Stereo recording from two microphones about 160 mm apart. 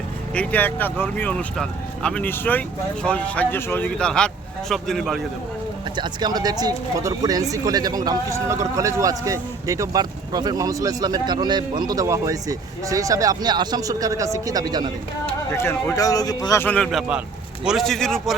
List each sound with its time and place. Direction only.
0.3 s a man's voice: 10° left (ahead or behind)
6.0 s speech: 25° right (ahead or behind)
15.5 s a man's voice: 20° left (ahead or behind); by 18.3 s 5° left (ahead or behind)